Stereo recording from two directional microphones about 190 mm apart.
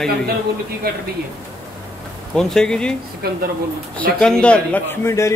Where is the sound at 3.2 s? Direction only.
55° right (ahead or behind).